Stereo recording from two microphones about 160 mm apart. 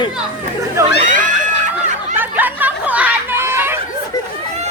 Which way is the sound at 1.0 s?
55° right (ahead or behind).